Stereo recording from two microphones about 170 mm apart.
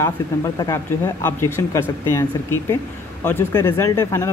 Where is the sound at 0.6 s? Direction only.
15° left (ahead or behind).